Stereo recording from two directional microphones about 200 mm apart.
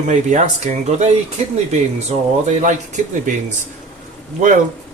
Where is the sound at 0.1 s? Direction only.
35° right (ahead or behind).